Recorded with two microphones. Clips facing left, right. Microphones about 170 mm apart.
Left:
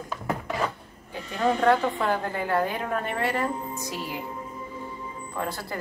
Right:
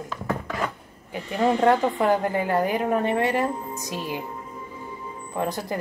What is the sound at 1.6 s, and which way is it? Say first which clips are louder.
Speech: right 2 dB; 20° right (ahead or behind).